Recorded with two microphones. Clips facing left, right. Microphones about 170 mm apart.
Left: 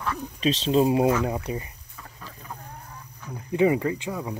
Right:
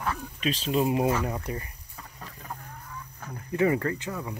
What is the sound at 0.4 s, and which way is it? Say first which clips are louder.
Speech: left 6 dB; 25° left (ahead or behind).